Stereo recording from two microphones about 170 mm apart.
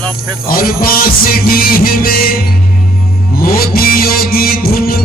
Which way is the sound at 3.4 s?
60° left (ahead or behind).